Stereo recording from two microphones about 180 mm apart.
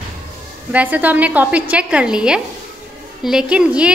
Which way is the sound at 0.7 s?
10° right (ahead or behind).